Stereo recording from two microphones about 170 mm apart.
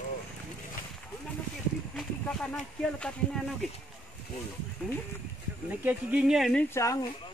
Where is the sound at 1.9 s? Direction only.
5° left (ahead or behind).